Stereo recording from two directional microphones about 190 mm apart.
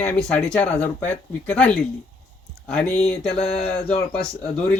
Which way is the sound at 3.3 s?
35° left (ahead or behind).